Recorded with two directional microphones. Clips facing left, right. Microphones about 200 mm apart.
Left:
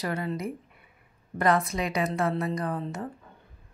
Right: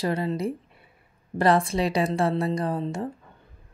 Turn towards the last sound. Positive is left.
turn(degrees=-25)  # may be behind; listen again after turning